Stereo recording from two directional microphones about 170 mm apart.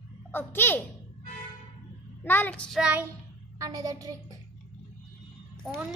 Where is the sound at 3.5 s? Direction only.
20° right (ahead or behind).